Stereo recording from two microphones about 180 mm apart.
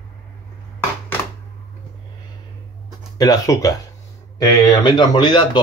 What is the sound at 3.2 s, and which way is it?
Speech, 20° left (ahead or behind).